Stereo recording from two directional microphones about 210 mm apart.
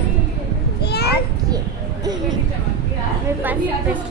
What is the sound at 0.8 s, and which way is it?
Children playing, 50° left (ahead or behind).